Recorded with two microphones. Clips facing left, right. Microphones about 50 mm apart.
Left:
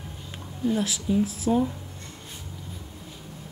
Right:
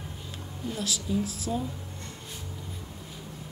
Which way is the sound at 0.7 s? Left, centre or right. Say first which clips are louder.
Left 3 dB; left.